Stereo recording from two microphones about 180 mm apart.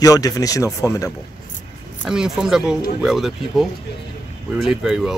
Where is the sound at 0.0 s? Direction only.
20° left (ahead or behind).